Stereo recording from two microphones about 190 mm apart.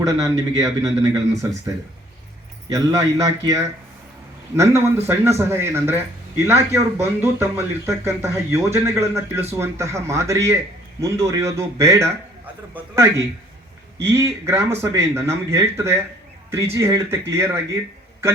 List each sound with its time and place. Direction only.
0.2 s speech: 15° right (ahead or behind)